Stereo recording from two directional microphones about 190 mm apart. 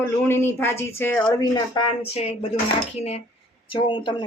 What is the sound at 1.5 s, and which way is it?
Speech, 20° left (ahead or behind).